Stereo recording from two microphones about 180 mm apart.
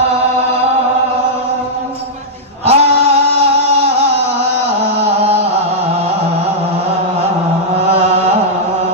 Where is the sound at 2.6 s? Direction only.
35° right (ahead or behind).